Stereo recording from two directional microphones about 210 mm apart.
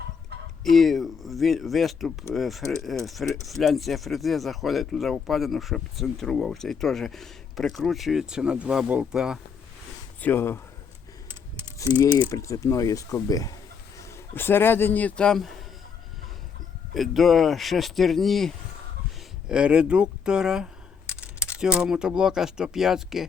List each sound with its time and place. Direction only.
0.6 s speech: centre (ahead or behind)
10.2 s speech: 10° left (ahead or behind)
11.8 s speech: 20° left (ahead or behind); by 15.5 s centre (ahead or behind)
16.9 s speech: centre (ahead or behind)